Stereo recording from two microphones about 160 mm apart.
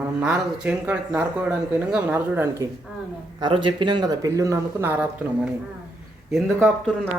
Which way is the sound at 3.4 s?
30° right (ahead or behind).